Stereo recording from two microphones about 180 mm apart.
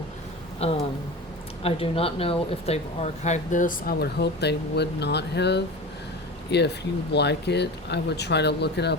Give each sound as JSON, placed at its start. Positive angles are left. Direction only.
{"t": 0.6, "sound": "speech", "side_deg": 35}